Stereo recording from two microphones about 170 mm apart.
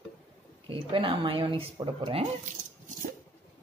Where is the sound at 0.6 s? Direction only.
30° right (ahead or behind).